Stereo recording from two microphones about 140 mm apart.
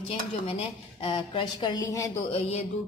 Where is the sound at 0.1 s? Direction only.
45° left (ahead or behind); by 2.0 s 25° left (ahead or behind).